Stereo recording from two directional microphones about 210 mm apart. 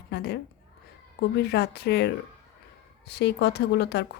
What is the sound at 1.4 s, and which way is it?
Speech, 50° left (ahead or behind).